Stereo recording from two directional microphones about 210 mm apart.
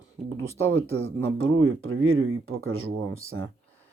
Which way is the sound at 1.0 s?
75° right (ahead or behind).